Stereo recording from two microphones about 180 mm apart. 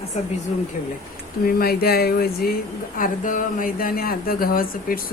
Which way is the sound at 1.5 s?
55° left (ahead or behind).